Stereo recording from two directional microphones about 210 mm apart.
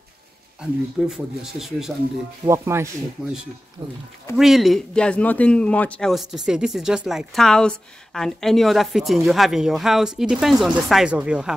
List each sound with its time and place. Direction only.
0.6 s speech: 5° right (ahead or behind)
2.4 s speech: 15° right (ahead or behind)
4.4 s speech: centre (ahead or behind)